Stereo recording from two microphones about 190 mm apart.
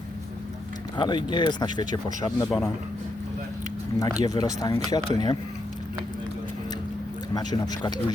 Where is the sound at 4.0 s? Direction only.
20° left (ahead or behind).